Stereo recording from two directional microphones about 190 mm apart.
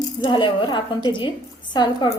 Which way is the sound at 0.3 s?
25° left (ahead or behind).